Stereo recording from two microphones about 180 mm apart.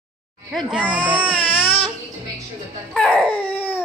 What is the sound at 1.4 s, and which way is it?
Baby cry, 30° left (ahead or behind).